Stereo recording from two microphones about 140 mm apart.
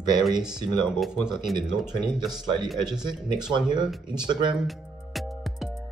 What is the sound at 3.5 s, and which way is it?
Speech, 30° right (ahead or behind).